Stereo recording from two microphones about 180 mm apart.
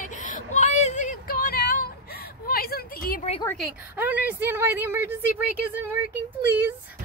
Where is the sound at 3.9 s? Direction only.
10° right (ahead or behind).